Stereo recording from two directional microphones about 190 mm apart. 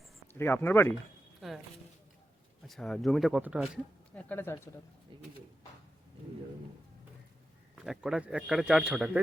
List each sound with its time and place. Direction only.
0.3 s speech: 10° left (ahead or behind)
1.4 s a sound: centre (ahead or behind)
2.6 s speech: centre (ahead or behind)
4.1 s speech: 10° left (ahead or behind)
7.9 s speech: 5° right (ahead or behind)